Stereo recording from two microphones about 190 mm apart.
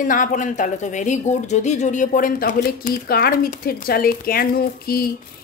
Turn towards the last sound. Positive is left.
turn(degrees=50)  # may be behind; listen again after turning